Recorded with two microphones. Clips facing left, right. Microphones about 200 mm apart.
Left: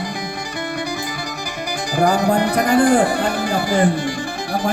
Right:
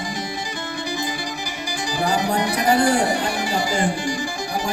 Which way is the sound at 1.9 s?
55° left (ahead or behind).